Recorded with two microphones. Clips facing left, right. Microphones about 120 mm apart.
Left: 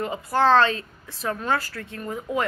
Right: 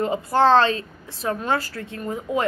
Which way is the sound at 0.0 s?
25° right (ahead or behind).